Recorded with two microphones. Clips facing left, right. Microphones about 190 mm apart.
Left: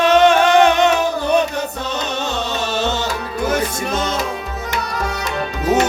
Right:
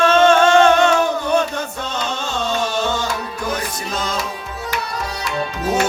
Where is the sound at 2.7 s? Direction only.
20° left (ahead or behind).